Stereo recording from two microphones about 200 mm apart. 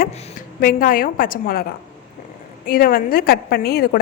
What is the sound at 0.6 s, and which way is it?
A woman's voice, 45° left (ahead or behind).